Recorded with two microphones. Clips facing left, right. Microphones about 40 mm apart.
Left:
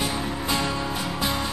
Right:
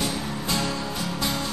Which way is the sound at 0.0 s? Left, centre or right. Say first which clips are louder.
Left 1 dB; centre.